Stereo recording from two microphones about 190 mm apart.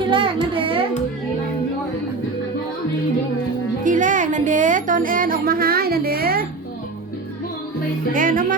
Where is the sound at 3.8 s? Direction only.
40° right (ahead or behind).